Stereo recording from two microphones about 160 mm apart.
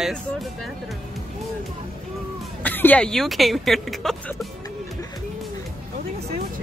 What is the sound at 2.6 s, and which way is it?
Speech, 10° left (ahead or behind).